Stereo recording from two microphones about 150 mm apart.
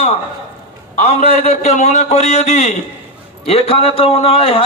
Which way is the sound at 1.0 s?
45° left (ahead or behind).